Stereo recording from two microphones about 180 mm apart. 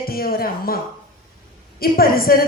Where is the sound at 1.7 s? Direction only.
55° left (ahead or behind).